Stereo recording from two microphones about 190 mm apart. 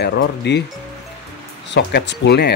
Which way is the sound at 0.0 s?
65° left (ahead or behind).